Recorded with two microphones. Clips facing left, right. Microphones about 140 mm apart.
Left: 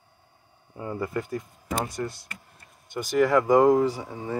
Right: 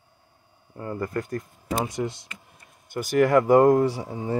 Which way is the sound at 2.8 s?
5° right (ahead or behind).